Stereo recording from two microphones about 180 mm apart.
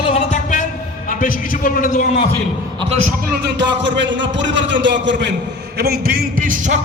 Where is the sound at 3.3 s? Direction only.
70° right (ahead or behind).